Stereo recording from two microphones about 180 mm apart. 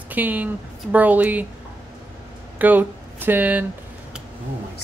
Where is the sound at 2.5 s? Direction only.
10° right (ahead or behind).